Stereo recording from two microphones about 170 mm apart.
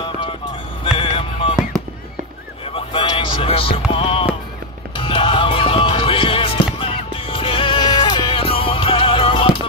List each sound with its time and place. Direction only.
0.8 s music: 30° left (ahead or behind)
2.6 s a sound: 30° left (ahead or behind)
3.9 s music: 30° left (ahead or behind)